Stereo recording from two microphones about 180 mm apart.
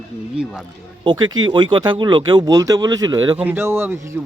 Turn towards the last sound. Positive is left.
turn(degrees=-10)  # may be behind; listen again after turning